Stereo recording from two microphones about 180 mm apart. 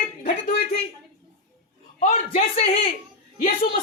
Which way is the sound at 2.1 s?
35° left (ahead or behind).